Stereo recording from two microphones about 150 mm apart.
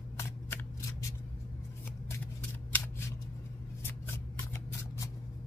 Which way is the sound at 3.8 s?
15° left (ahead or behind).